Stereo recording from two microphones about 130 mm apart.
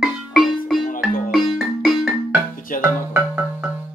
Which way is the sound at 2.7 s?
90° left.